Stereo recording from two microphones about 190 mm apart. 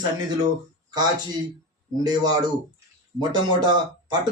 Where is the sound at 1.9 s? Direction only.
20° right (ahead or behind).